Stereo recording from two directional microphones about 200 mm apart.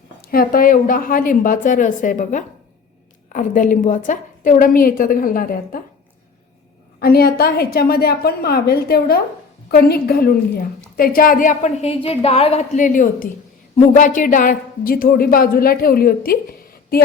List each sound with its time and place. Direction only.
0.2 s a woman's voice: 45° left (ahead or behind)
7.0 s a woman's voice: 50° left (ahead or behind)